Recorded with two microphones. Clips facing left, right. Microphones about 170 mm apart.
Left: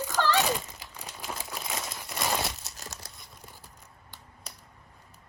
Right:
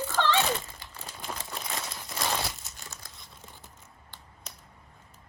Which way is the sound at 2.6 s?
40° left (ahead or behind).